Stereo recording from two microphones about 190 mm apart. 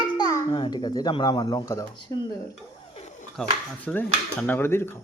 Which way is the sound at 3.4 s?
5° left (ahead or behind).